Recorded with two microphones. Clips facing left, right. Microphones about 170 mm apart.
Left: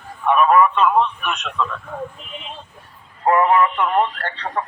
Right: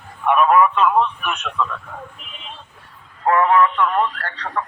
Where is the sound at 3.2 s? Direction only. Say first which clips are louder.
Even; 15° left (ahead or behind).